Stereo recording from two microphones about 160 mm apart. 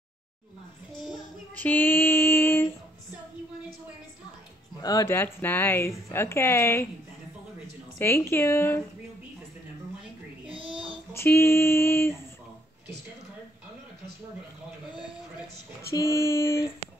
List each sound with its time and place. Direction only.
1.5 s female singing: 10° left (ahead or behind)
4.8 s a woman's voice: 20° left (ahead or behind)
8.0 s a woman's voice: 15° left (ahead or behind)
11.1 s a woman's voice: 15° left (ahead or behind)
15.9 s a woman's voice: 20° left (ahead or behind)